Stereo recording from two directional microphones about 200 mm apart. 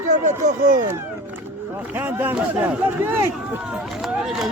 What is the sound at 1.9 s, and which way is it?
Speech, 10° right (ahead or behind).